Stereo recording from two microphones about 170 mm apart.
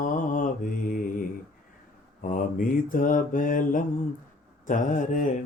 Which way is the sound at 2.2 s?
55° left (ahead or behind).